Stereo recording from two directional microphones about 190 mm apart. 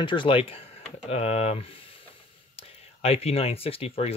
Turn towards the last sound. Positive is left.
turn(degrees=30)  # may be behind; listen again after turning